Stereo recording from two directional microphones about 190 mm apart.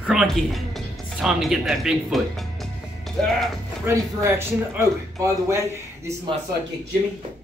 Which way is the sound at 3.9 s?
15° right (ahead or behind).